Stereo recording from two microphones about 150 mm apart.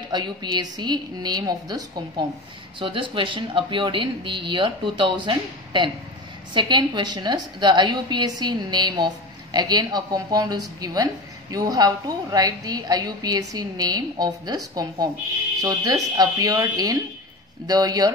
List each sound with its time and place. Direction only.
0.1 s a woman's voice: 30° right (ahead or behind)
15.6 s a woman's voice: 25° right (ahead or behind)